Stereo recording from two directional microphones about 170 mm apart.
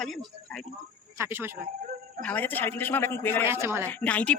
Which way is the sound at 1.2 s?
15° right (ahead or behind).